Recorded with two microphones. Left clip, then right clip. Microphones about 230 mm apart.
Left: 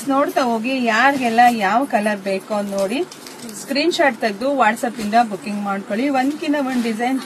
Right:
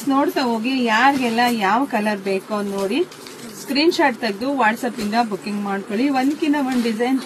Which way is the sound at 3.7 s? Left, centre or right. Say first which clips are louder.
Even; centre.